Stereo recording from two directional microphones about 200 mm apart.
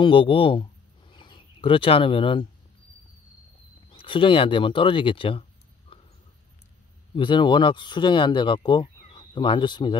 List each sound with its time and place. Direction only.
0.0 s speech: 25° left (ahead or behind)
3.9 s speech: 25° left (ahead or behind)
7.2 s speech: 25° left (ahead or behind)